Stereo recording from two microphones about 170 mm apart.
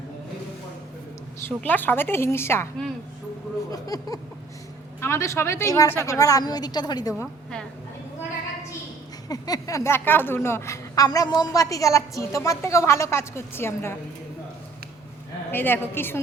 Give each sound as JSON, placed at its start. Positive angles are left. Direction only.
{"t": 1.5, "sound": "a woman's voice", "side_deg": 10}
{"t": 3.7, "sound": "a woman's voice", "side_deg": 20}
{"t": 9.3, "sound": "a woman's voice", "side_deg": 20}
{"t": 15.5, "sound": "a woman's voice", "side_deg": 10}